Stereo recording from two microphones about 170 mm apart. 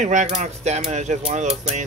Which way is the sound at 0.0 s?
45° right (ahead or behind).